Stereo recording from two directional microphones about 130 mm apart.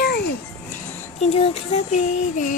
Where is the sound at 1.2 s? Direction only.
55° left (ahead or behind); by 2.5 s 80° left.